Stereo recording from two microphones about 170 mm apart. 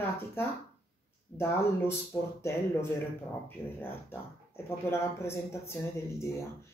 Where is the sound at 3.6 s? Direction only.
15° left (ahead or behind).